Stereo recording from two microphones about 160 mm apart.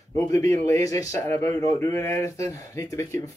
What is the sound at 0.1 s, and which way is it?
Speech, 15° left (ahead or behind).